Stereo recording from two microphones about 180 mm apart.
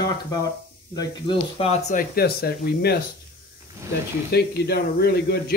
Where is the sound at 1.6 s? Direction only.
35° left (ahead or behind).